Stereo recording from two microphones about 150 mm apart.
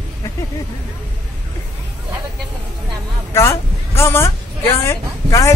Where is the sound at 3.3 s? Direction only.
15° left (ahead or behind).